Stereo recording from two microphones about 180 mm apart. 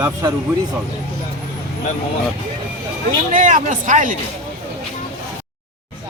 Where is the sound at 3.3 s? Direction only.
50° right (ahead or behind).